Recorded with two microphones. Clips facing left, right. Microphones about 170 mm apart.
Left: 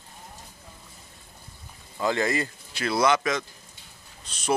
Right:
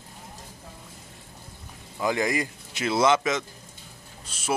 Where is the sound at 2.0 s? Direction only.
15° right (ahead or behind).